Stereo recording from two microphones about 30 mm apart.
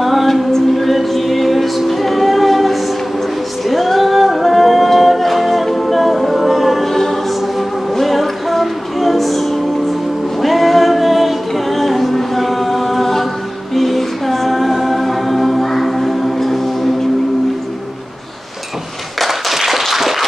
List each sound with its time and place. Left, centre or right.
0.0 s a capella: centre
0.7 s music: centre
3.6 s a capella: centre
6.9 s choir: centre
7.9 s music: centre
19.1 s a sound: centre